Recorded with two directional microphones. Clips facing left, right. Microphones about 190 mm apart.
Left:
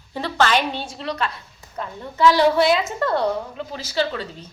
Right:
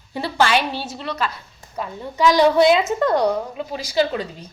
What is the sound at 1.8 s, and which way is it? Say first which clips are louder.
A woman's voice: even; 15° right (ahead or behind).